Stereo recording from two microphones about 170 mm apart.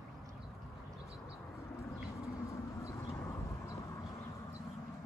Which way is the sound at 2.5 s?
15° left (ahead or behind).